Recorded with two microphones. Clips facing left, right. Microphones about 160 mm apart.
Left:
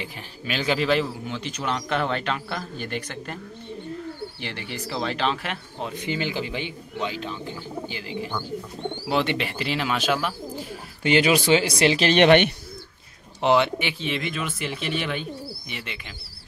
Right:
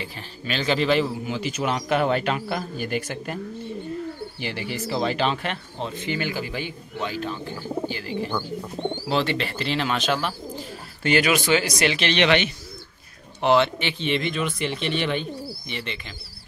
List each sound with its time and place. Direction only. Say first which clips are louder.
0.0 s a man's voice: right 1 dB; 10° left (ahead or behind); by 3.3 s 10° right (ahead or behind)
4.4 s speech: right 4 dB; 5° right (ahead or behind); by 12.5 s 55° left (ahead or behind)
13.4 s speech: right 1 dB; 15° left (ahead or behind)